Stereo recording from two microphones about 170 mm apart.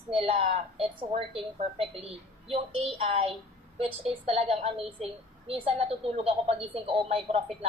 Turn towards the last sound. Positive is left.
turn(degrees=-35)  # may be behind; listen again after turning